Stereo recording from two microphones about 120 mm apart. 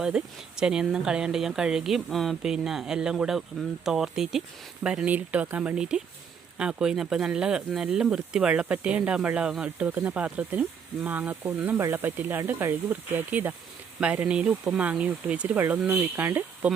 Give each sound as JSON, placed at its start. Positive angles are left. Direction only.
{"t": 0.0, "sound": "speech", "side_deg": -5}